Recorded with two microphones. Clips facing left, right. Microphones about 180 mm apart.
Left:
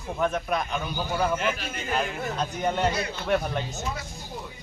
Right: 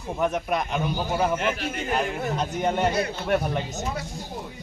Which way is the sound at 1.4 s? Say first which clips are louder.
Right 2 dB; 65° right (ahead or behind).